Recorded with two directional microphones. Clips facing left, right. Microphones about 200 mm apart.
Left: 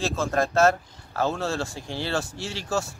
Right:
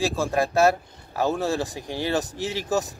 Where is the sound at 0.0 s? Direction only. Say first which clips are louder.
Right 1 dB; 15° right (ahead or behind).